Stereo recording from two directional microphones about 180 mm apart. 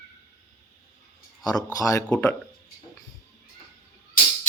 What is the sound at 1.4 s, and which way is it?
Speech, 20° left (ahead or behind).